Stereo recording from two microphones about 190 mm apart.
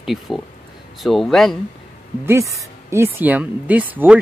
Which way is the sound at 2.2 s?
15° right (ahead or behind).